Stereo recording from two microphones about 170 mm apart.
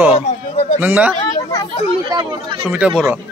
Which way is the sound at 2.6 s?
5° right (ahead or behind).